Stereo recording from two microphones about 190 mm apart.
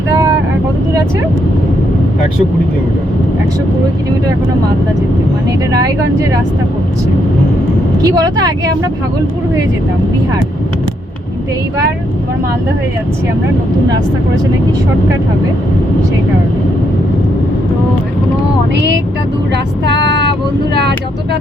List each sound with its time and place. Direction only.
8.0 s speech: 20° right (ahead or behind)
18.7 s vehicle: 65° right (ahead or behind)
19.8 s speech: 65° right (ahead or behind)